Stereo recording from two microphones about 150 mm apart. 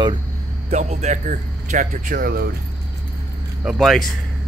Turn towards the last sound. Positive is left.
turn(degrees=0)  # may be behind; listen again after turning